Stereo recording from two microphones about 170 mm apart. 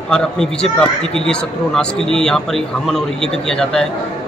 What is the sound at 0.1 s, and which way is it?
Speech, 5° left (ahead or behind).